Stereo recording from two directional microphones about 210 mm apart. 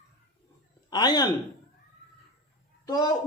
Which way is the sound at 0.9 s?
20° left (ahead or behind).